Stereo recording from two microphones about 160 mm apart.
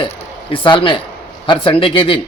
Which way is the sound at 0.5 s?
30° left (ahead or behind).